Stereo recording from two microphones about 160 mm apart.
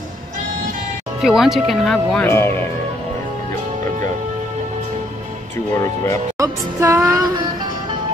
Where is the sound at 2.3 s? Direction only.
15° left (ahead or behind).